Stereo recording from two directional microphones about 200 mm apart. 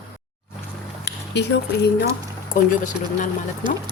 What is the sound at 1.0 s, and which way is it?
Speech, 60° left (ahead or behind).